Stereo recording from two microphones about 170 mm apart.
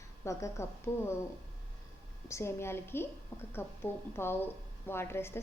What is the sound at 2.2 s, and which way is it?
A woman's voice, 15° left (ahead or behind).